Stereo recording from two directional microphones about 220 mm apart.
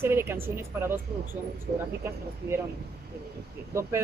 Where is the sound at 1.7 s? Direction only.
40° right (ahead or behind).